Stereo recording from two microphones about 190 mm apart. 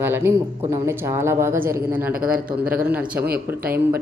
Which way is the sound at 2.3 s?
50° right (ahead or behind).